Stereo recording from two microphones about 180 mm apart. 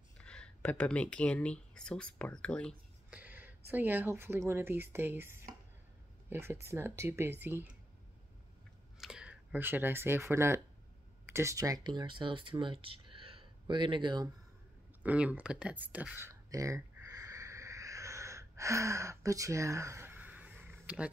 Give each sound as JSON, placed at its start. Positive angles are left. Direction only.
{"t": 0.2, "sound": "speech", "side_deg": 5}
{"t": 3.1, "sound": "speech", "side_deg": -10}
{"t": 9.0, "sound": "speech", "side_deg": -5}
{"t": 15.0, "sound": "a sound", "side_deg": -5}